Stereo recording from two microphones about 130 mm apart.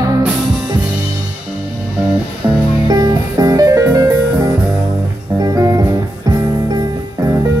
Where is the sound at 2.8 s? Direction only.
30° right (ahead or behind).